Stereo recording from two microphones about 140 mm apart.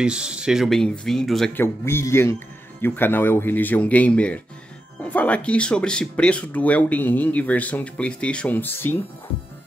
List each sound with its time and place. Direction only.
0.0 s speech: 5° right (ahead or behind)
1.5 s speech: 15° left (ahead or behind)